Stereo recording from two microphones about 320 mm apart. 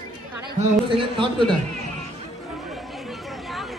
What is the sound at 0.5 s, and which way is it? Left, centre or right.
Speech, centre.